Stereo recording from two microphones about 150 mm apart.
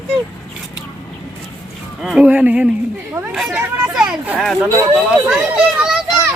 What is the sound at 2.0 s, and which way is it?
A child's voice, 5° right (ahead or behind).